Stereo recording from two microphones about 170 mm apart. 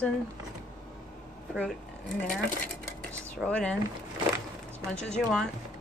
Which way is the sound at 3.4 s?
5° left (ahead or behind).